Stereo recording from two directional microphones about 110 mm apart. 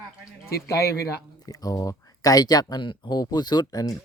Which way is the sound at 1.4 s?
35° left (ahead or behind).